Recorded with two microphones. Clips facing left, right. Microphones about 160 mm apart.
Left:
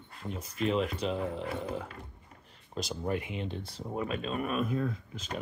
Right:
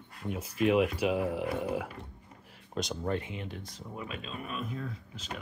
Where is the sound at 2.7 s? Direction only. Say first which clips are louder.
Right 1 dB; centre (ahead or behind).